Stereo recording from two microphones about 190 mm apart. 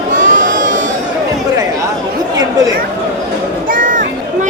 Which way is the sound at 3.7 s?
45° right (ahead or behind).